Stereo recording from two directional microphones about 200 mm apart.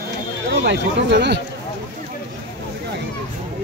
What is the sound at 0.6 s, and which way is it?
Speech, 60° right (ahead or behind).